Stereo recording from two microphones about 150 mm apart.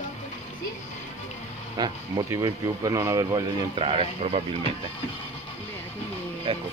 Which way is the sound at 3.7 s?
40° right (ahead or behind).